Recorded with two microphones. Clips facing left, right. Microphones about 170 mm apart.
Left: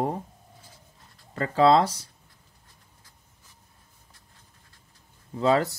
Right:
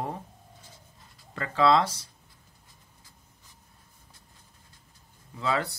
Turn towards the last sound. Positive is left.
turn(degrees=40)  # may be behind; listen again after turning